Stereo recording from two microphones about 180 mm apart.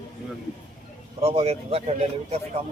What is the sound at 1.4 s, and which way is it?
Speech, 35° right (ahead or behind).